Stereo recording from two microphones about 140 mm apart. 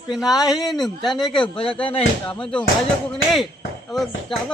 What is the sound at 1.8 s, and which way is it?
Speech, 40° left (ahead or behind).